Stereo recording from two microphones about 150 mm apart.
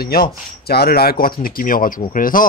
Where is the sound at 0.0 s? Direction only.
90° left.